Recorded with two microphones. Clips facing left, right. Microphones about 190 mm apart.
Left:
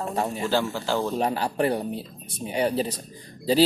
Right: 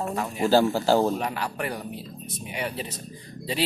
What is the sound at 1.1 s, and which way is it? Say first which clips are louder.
A man's voice: left 4 dB; 30° left (ahead or behind).